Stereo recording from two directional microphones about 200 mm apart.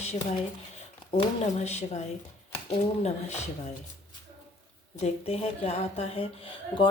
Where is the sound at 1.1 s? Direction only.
35° left (ahead or behind).